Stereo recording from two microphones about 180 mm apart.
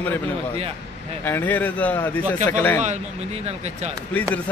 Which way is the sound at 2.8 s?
40° right (ahead or behind).